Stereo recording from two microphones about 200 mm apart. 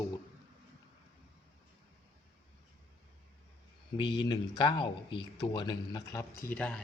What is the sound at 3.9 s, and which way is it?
Speech, 25° left (ahead or behind).